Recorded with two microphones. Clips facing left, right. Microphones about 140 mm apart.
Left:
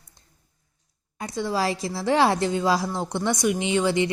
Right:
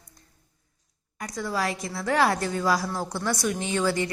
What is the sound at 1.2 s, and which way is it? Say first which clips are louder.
A woman's voice: left 3 dB; 25° left (ahead or behind).